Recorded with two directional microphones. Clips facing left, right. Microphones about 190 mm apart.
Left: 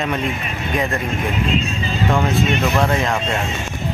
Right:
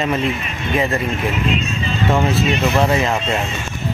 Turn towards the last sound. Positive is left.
turn(degrees=-5)  # may be behind; listen again after turning